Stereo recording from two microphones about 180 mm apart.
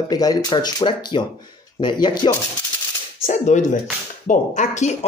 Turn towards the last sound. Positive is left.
turn(degrees=40)  # may be behind; listen again after turning